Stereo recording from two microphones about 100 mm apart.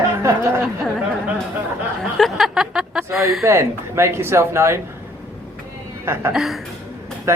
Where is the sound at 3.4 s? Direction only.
30° right (ahead or behind).